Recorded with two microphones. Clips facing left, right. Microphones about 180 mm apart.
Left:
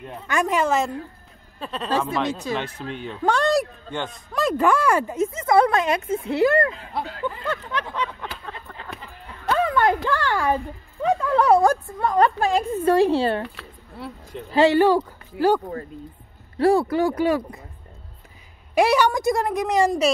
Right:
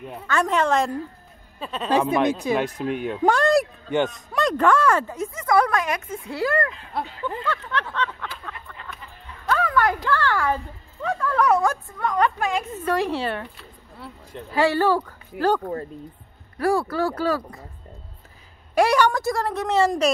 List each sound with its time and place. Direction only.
0.3 s speech: 10° left (ahead or behind)
1.9 s speech: 15° right (ahead or behind); by 6.7 s 25° left (ahead or behind)
7.0 s speech: centre (ahead or behind)
7.4 s speech: 15° left (ahead or behind)
8.5 s a sound: 35° left (ahead or behind)
9.5 s speech: 25° left (ahead or behind)
14.5 s speech: 20° left (ahead or behind)
16.5 s speech: 25° left (ahead or behind)
18.8 s speech: 10° left (ahead or behind)